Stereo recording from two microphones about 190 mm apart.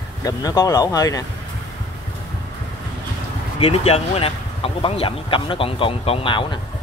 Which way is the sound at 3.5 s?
30° left (ahead or behind).